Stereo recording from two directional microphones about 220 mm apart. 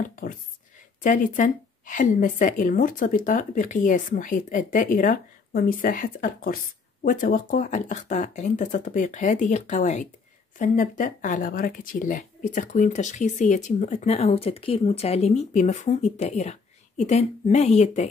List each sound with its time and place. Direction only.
0.0 s a woman's voice: 40° left (ahead or behind)